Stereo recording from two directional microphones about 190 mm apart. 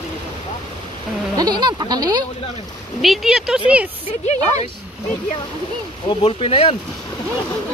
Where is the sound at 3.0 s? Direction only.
Centre (ahead or behind).